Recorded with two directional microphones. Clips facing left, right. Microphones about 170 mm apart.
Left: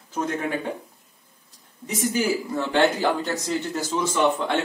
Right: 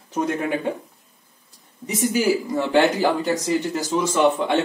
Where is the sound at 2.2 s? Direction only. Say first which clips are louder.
Right 4 dB; 15° right (ahead or behind).